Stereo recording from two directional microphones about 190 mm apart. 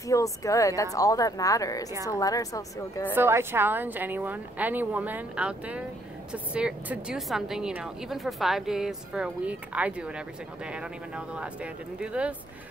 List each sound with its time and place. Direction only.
0.0 s a woman's voice: 15° left (ahead or behind)
3.2 s a woman's voice: 10° right (ahead or behind)